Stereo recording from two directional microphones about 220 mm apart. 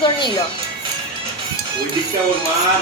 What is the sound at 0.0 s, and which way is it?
Speech, 20° left (ahead or behind).